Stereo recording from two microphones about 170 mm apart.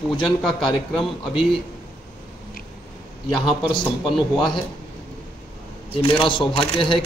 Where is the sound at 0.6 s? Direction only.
30° left (ahead or behind).